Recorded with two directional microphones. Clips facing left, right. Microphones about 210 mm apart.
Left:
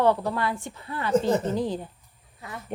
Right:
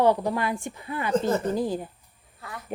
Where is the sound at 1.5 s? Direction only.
10° right (ahead or behind).